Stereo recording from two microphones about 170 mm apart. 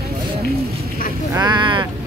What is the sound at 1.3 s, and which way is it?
Speech, 25° right (ahead or behind).